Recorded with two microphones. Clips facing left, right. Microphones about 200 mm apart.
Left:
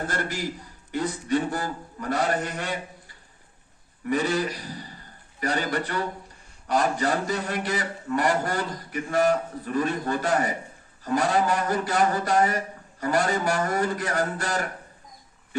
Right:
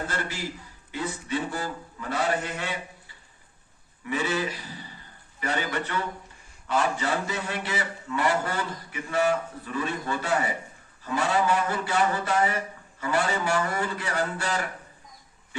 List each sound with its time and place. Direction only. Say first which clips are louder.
0.1 s a man's voice: left 3 dB; 45° left (ahead or behind)
4.0 s a man's voice: left 3 dB; 45° left (ahead or behind)